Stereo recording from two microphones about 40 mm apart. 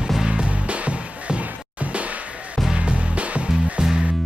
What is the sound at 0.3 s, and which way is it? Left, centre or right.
Music, right.